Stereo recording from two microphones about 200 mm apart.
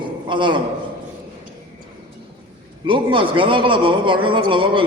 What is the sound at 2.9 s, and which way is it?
A man's voice, 25° right (ahead or behind).